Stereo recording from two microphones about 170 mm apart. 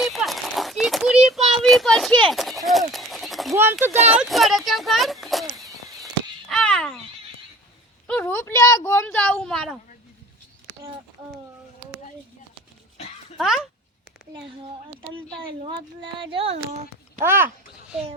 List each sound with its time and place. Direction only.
0.0 s a sound: centre (ahead or behind)
3.5 s speech: 15° right (ahead or behind)
4.1 s speech: 5° right (ahead or behind)
6.5 s a sound: 5° left (ahead or behind)
8.0 s speech: 10° left (ahead or behind)
13.3 s speech: centre (ahead or behind)
15.6 s speech: 30° right (ahead or behind)
17.2 s speech: 15° right (ahead or behind)